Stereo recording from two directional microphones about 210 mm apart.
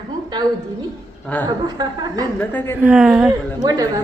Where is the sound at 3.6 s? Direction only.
15° right (ahead or behind).